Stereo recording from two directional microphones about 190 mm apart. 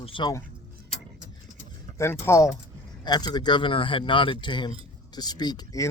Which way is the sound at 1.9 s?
15° left (ahead or behind).